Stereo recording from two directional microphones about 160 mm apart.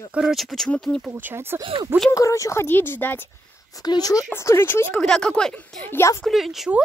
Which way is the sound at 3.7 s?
25° left (ahead or behind).